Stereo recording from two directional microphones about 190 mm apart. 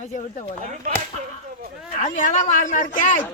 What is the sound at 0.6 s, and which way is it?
Speech, 40° right (ahead or behind).